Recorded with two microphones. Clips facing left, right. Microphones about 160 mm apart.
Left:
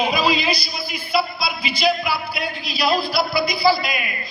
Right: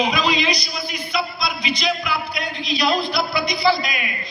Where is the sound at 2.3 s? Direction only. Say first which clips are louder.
Right 2 dB; 5° left (ahead or behind).